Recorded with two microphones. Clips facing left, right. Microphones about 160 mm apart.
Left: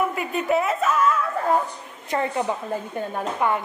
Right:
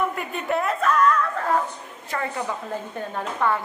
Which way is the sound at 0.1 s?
Centre (ahead or behind).